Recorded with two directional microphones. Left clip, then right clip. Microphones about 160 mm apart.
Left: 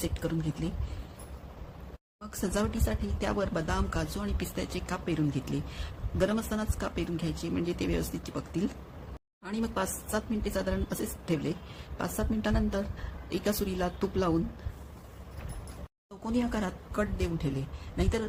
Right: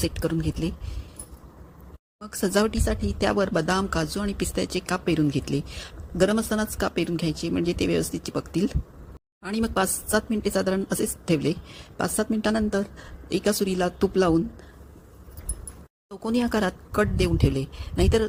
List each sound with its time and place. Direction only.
0.0 s speech: 50° right (ahead or behind)
2.2 s speech: 45° right (ahead or behind)
16.2 s a woman's voice: 55° right (ahead or behind)